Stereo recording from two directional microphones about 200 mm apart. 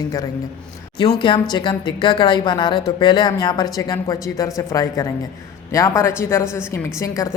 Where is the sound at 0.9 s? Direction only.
25° left (ahead or behind).